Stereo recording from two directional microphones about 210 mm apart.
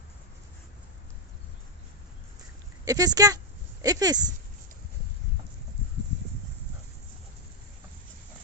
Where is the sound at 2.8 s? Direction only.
15° right (ahead or behind).